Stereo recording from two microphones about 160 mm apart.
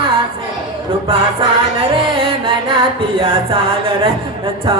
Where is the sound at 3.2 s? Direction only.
35° right (ahead or behind).